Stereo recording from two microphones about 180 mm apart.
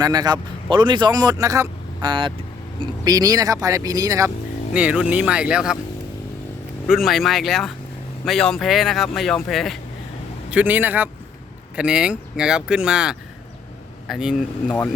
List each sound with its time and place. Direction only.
0.0 s speech: 20° right (ahead or behind)
4.7 s speech: 5° right (ahead or behind)
6.9 s speech: centre (ahead or behind)
10.5 s speech: 10° right (ahead or behind)